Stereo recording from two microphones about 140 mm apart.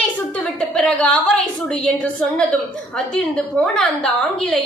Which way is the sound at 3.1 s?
5° left (ahead or behind).